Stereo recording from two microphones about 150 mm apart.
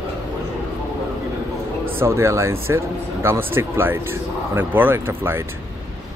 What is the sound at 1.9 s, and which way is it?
Speech, 15° right (ahead or behind).